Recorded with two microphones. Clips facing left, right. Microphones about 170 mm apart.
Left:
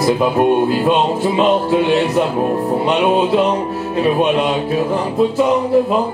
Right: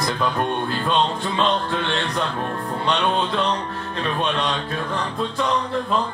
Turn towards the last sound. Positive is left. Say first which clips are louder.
# left 9 dB
turn(degrees=10)  # may be behind; listen again after turning